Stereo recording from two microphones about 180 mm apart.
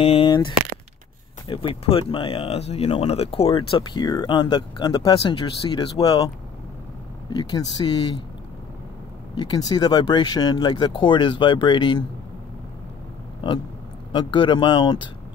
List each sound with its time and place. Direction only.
0.0 s speech: 30° left (ahead or behind)
9.4 s speech: 20° left (ahead or behind)
14.1 s speech: 25° left (ahead or behind)